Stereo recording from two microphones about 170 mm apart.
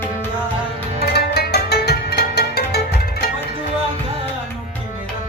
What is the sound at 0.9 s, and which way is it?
Music, 65° left (ahead or behind).